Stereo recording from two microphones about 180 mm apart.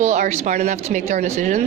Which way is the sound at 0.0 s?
40° right (ahead or behind).